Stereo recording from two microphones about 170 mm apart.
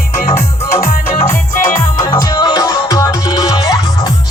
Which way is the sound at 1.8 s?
20° left (ahead or behind).